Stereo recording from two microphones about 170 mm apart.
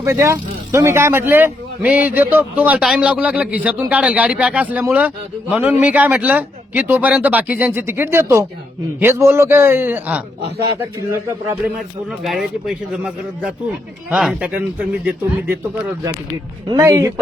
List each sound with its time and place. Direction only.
0.0 s a man's voice: 15° right (ahead or behind)
12.2 s a man's voice: centre (ahead or behind)
16.6 s speech: 20° right (ahead or behind)